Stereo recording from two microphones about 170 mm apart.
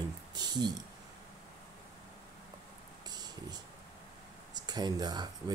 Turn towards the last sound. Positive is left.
turn(degrees=-25)  # may be behind; listen again after turning